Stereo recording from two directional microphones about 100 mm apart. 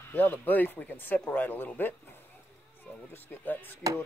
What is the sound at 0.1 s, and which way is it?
Speech, 20° left (ahead or behind).